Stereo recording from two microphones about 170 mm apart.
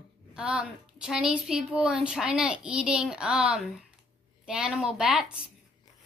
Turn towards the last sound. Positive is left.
turn(degrees=-5)  # may be behind; listen again after turning